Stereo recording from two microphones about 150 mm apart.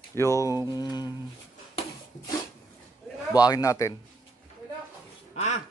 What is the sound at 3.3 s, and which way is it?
Speech, 25° left (ahead or behind).